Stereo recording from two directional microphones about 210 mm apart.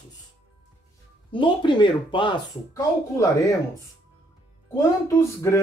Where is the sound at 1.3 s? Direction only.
25° left (ahead or behind).